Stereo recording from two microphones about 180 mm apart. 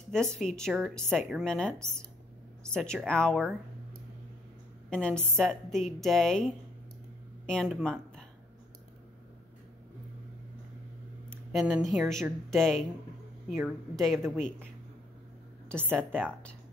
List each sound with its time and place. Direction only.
0.1 s a woman's voice: 5° left (ahead or behind)
4.8 s a woman's voice: 5° left (ahead or behind)
11.2 s a woman's voice: centre (ahead or behind)
15.8 s speech: 10° right (ahead or behind)